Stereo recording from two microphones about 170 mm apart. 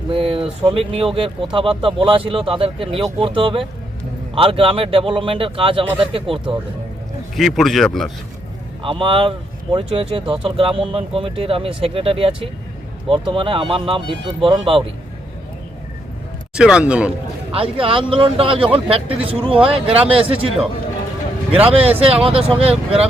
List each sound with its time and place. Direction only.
0.1 s speech: 30° right (ahead or behind)
7.3 s speech: centre (ahead or behind)
8.8 s speech: 30° right (ahead or behind)
16.6 s speech: 5° right (ahead or behind)
17.5 s speech: 35° right (ahead or behind)
21.9 s speech: 35° right (ahead or behind)